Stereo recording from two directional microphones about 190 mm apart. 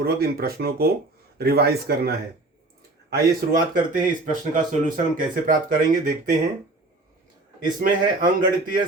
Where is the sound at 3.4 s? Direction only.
50° right (ahead or behind).